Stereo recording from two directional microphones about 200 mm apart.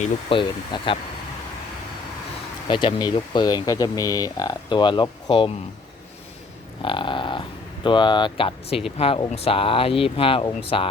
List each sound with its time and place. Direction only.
0.0 s speech: 25° left (ahead or behind)
2.6 s speech: 25° left (ahead or behind)
6.8 s a sound: 25° left (ahead or behind)
7.9 s speech: 25° left (ahead or behind)